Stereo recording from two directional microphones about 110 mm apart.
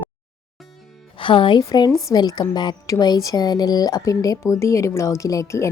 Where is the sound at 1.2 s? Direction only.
50° left (ahead or behind).